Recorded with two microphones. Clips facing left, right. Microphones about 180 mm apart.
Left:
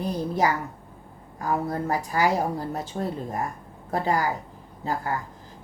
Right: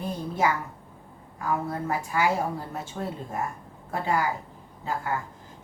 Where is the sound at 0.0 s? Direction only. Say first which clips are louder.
Left 2 dB; 35° left (ahead or behind).